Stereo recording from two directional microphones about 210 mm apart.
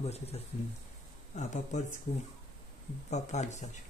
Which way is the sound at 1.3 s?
35° left (ahead or behind).